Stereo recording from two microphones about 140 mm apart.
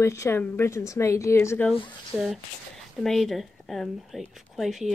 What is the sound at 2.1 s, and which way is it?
Speech, 5° right (ahead or behind).